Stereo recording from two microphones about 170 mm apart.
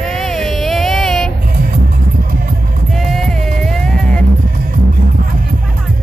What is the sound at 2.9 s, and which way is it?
Music, centre (ahead or behind).